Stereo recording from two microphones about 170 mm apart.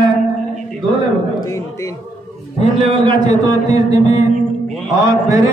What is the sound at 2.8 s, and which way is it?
A man's voice, 25° right (ahead or behind).